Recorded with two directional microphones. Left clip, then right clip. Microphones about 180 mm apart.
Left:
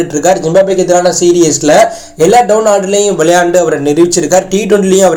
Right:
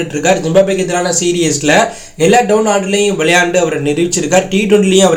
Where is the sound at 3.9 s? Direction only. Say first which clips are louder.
Left 4 dB; 15° left (ahead or behind).